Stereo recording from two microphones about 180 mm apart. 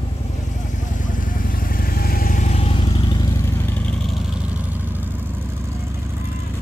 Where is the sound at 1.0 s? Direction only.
50° left (ahead or behind); by 3.0 s 30° left (ahead or behind).